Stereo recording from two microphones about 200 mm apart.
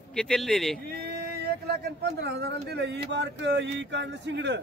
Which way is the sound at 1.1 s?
50° right (ahead or behind).